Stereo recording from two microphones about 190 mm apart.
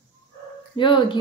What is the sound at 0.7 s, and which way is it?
Speech, 25° left (ahead or behind).